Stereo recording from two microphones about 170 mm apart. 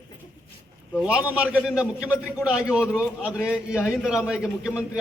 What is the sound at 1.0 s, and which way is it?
A man's voice, 5° right (ahead or behind).